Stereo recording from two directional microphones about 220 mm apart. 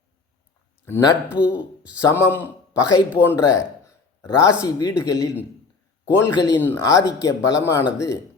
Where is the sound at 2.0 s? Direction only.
10° left (ahead or behind).